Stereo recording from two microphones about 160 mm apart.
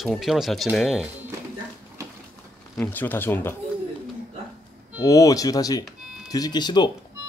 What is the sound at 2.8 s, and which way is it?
Speech, 10° left (ahead or behind).